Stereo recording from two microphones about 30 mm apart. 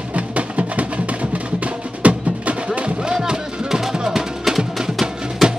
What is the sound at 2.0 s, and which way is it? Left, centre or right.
Music, right.